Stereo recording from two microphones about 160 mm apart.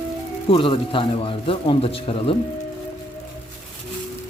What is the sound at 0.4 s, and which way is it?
Speech, 35° left (ahead or behind).